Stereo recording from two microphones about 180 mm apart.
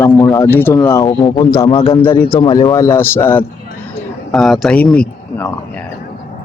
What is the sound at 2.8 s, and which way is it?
Speech, 15° left (ahead or behind).